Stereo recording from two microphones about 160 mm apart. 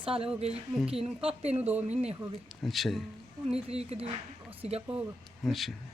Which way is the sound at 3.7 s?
40° right (ahead or behind).